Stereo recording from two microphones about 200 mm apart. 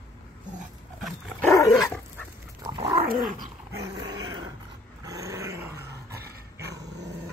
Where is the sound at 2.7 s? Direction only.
15° right (ahead or behind).